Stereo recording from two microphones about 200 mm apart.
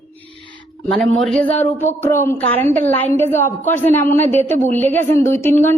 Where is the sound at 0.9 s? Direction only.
Centre (ahead or behind).